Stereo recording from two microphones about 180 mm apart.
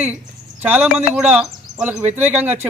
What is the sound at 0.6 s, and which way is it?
A man's voice, 10° right (ahead or behind).